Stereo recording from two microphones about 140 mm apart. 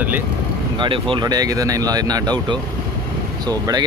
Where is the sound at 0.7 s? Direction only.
35° right (ahead or behind).